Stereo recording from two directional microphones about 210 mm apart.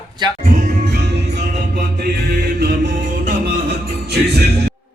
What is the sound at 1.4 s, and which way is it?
Music, 35° right (ahead or behind).